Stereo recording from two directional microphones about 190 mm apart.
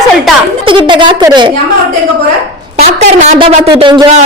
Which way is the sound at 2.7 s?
40° right (ahead or behind).